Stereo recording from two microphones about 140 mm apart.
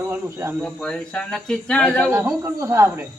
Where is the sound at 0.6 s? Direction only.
5° left (ahead or behind).